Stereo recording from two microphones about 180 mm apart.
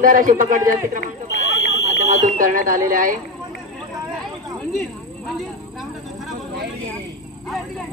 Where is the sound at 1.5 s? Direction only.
80° left.